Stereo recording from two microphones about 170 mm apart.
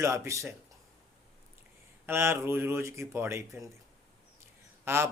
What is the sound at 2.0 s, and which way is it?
Speech, 15° right (ahead or behind).